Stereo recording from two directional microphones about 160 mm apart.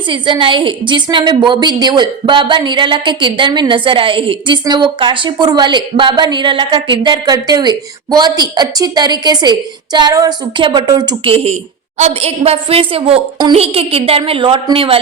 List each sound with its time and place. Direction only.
0.1 s a woman's voice: 30° right (ahead or behind)